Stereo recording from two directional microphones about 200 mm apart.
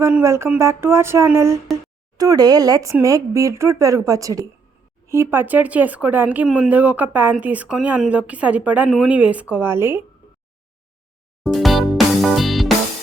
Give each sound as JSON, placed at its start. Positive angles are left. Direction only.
{"t": 0.0, "sound": "speech", "side_deg": -15}
{"t": 11.4, "sound": "music", "side_deg": 0}